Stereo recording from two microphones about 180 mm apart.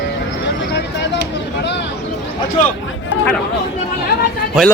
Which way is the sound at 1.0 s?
70° left (ahead or behind).